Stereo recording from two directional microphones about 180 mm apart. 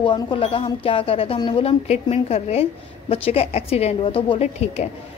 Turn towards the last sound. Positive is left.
turn(degrees=35)  # may be behind; listen again after turning